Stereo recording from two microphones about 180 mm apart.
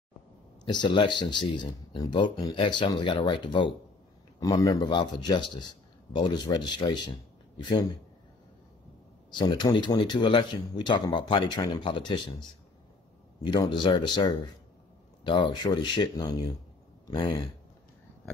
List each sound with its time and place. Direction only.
0.7 s speech: 25° left (ahead or behind)
9.3 s speech: 25° left (ahead or behind)